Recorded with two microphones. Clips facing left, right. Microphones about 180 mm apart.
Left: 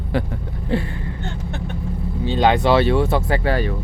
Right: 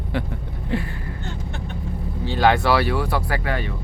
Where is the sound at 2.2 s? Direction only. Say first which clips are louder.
Left 2 dB; 20° left (ahead or behind).